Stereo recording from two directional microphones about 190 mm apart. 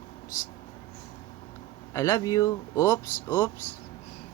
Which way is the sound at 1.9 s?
15° left (ahead or behind).